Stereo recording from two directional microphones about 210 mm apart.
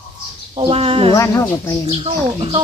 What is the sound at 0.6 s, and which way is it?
Speech, 25° right (ahead or behind).